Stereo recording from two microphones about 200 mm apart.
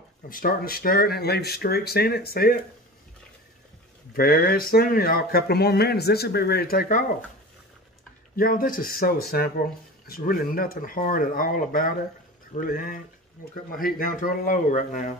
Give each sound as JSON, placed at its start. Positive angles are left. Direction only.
{"t": 0.3, "sound": "speech", "side_deg": 45}
{"t": 4.1, "sound": "speech", "side_deg": 50}
{"t": 8.4, "sound": "speech", "side_deg": 45}